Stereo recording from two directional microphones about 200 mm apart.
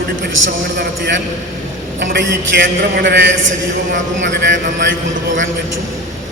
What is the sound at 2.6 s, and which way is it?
A man's voice, 65° right (ahead or behind).